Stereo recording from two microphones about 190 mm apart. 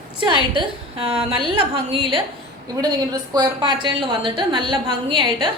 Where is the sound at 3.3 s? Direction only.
20° right (ahead or behind).